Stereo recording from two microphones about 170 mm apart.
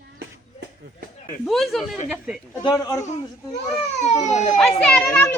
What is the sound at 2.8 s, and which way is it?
Speech, 15° left (ahead or behind).